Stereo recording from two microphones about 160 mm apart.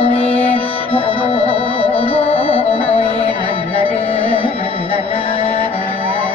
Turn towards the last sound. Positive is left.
turn(degrees=35)  # may be behind; listen again after turning